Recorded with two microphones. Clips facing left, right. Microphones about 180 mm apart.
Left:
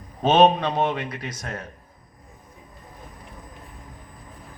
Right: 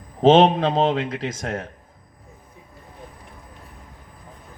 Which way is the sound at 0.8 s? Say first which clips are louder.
Right 4 dB; 90° right.